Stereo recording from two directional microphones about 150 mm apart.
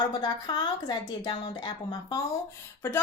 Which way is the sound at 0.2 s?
30° left (ahead or behind).